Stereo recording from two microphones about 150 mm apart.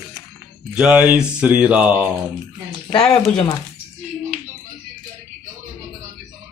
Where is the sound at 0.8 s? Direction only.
5° right (ahead or behind).